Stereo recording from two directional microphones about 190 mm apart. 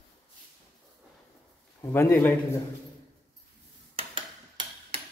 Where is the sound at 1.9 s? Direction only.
10° left (ahead or behind).